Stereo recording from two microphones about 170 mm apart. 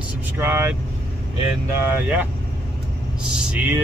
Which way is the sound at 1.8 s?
10° right (ahead or behind).